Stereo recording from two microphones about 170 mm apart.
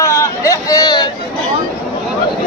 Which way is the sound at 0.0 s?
15° left (ahead or behind).